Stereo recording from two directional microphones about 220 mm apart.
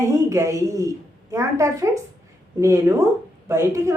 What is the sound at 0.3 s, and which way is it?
A woman's voice, 15° right (ahead or behind).